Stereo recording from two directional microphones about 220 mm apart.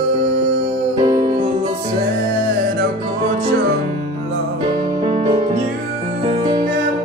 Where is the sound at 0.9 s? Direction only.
20° right (ahead or behind).